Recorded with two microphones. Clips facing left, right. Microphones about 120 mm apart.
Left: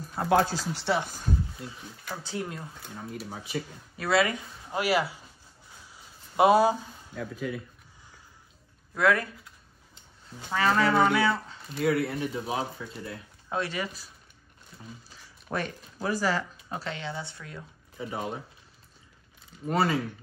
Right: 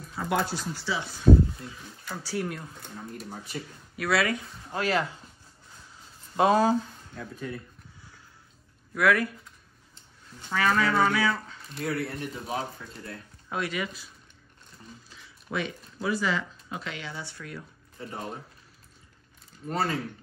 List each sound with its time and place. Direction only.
0.2 s speech: 85° left
1.3 s speech: 50° right (ahead or behind)
2.2 s speech: 20° left (ahead or behind)
2.8 s speech: 5° left (ahead or behind)
3.9 s speech: 25° left (ahead or behind)
4.8 s speech: 10° left (ahead or behind)
6.3 s speech: 15° left (ahead or behind)
8.9 s speech: 25° left (ahead or behind)
10.5 s speech: 25° left (ahead or behind)
12.0 s speech: 5° left (ahead or behind)
13.5 s speech: 30° left (ahead or behind)
15.1 s speech: 40° left (ahead or behind); by 17.6 s 25° left (ahead or behind)
17.9 s speech: 5° left (ahead or behind)
19.7 s speech: 5° left (ahead or behind)